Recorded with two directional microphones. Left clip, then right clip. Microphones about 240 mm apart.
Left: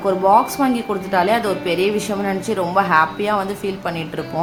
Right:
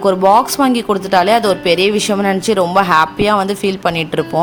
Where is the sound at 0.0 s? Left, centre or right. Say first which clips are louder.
Right 4 dB; right.